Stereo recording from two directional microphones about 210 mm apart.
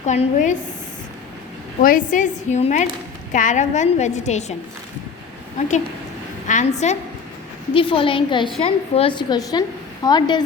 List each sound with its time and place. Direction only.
0.0 s a woman's voice: 35° left (ahead or behind)
1.8 s a woman's voice: 40° left (ahead or behind)
6.5 s a woman's voice: 35° left (ahead or behind)